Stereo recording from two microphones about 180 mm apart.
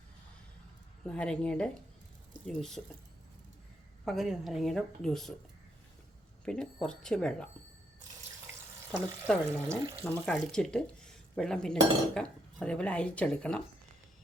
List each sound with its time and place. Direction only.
1.0 s speech: 5° left (ahead or behind)
4.0 s speech: centre (ahead or behind)
6.4 s speech: 5° left (ahead or behind)
8.9 s speech: 5° left (ahead or behind)
9.6 s speech: 15° right (ahead or behind)
10.0 s speech: 5° left (ahead or behind)